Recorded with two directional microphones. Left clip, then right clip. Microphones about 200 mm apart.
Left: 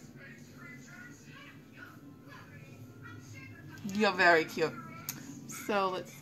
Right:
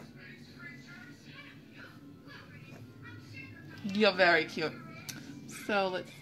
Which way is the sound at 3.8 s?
10° right (ahead or behind).